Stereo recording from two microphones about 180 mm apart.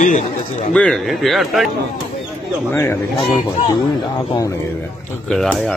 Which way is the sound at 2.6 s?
10° left (ahead or behind).